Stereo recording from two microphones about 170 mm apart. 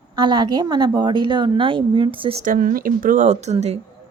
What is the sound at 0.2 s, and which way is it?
A woman's voice, 25° right (ahead or behind).